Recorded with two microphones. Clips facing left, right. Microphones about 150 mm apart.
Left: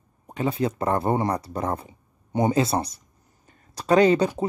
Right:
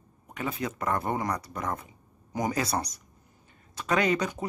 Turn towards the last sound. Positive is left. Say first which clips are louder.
# left 8 dB
turn(degrees=30)  # may be behind; listen again after turning